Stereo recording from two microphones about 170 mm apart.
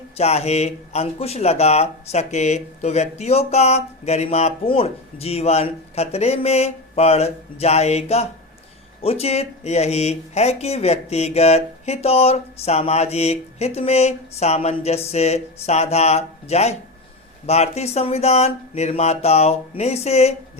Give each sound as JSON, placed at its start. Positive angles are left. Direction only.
{"t": 0.2, "sound": "speech", "side_deg": 40}